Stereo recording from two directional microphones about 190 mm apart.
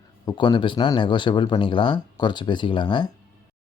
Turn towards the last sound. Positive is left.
turn(degrees=25)  # may be behind; listen again after turning